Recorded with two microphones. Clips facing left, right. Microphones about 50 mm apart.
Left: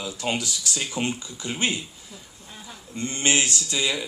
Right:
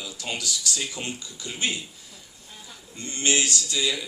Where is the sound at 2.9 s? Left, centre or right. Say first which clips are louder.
Left 2 dB; left.